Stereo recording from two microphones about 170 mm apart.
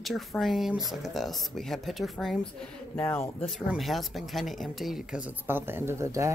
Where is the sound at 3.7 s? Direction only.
Centre (ahead or behind).